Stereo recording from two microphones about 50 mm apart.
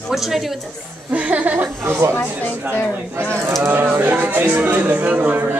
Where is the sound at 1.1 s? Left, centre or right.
Right.